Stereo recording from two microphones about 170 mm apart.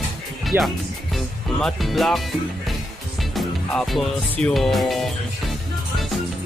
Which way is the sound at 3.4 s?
Centre (ahead or behind).